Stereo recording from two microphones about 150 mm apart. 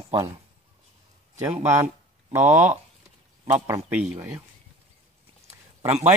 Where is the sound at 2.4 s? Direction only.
50° right (ahead or behind).